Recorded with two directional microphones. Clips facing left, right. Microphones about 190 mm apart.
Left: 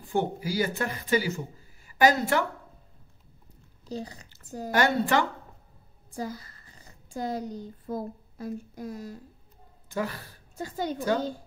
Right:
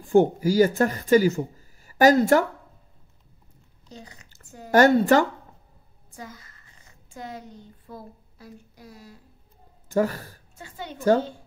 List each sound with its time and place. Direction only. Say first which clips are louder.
0.0 s a woman's voice: right 10 dB; 45° right (ahead or behind)
3.9 s speech: left 9 dB; 35° left (ahead or behind)
4.6 s speech: right 8 dB; 45° right (ahead or behind)
6.1 s speech: left 7 dB; 35° left (ahead or behind)
9.8 s speech: right 8 dB; 45° right (ahead or behind)
10.6 s a woman's voice: left 7 dB; 40° left (ahead or behind)